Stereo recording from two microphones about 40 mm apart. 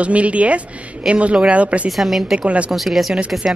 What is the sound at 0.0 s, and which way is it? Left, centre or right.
Speech, right.